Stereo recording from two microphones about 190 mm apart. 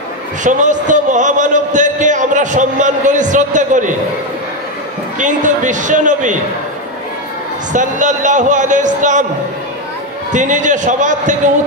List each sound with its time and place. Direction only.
0.4 s a man's voice: 40° right (ahead or behind)
5.2 s a man's voice: 40° right (ahead or behind)
7.7 s a man's voice: 40° right (ahead or behind)
10.3 s a man's voice: 40° right (ahead or behind)